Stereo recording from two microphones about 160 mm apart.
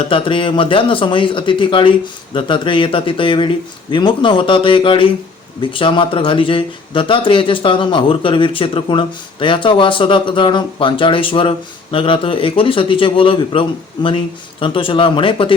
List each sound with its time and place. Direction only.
0.1 s speech: 35° left (ahead or behind)